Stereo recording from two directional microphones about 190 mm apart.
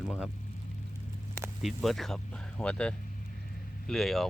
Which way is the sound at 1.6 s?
Centre (ahead or behind).